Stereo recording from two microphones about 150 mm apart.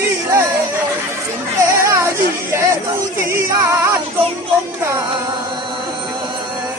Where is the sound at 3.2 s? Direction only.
20° right (ahead or behind).